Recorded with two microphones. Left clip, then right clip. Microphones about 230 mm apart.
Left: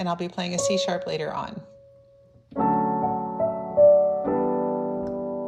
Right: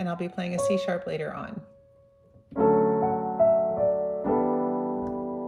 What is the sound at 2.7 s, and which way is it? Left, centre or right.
Music, right.